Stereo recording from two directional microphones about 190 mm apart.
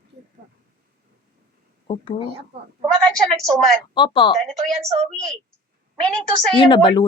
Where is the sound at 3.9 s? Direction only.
25° left (ahead or behind).